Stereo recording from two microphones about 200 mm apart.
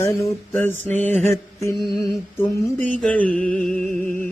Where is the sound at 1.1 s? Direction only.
35° right (ahead or behind).